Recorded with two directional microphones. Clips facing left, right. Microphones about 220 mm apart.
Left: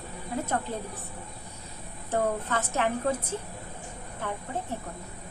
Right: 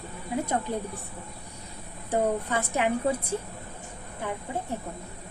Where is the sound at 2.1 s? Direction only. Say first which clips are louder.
Right 2 dB; 15° right (ahead or behind).